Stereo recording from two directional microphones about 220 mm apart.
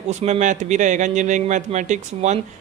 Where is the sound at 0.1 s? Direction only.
30° right (ahead or behind).